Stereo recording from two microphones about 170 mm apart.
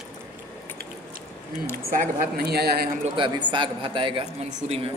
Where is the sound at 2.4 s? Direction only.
70° right (ahead or behind).